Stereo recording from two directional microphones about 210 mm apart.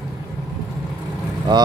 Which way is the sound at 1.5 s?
20° right (ahead or behind).